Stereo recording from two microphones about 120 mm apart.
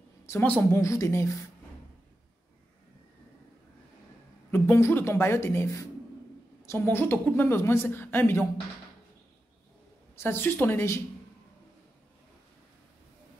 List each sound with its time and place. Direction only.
0.3 s a woman's voice: 15° left (ahead or behind)
0.7 s a woman's voice: 25° left (ahead or behind)
4.5 s a woman's voice: 20° left (ahead or behind)
10.1 s a woman's voice: 20° left (ahead or behind)